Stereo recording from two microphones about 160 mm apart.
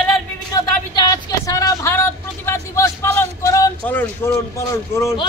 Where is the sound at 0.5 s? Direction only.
25° left (ahead or behind).